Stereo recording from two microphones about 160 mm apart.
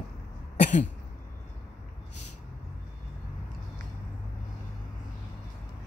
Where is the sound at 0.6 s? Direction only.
50° left (ahead or behind).